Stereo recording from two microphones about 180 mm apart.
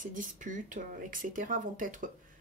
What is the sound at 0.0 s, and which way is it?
Speech, 45° right (ahead or behind).